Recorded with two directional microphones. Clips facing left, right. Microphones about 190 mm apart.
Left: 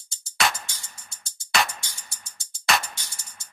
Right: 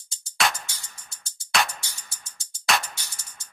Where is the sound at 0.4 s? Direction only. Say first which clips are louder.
Even; centre (ahead or behind).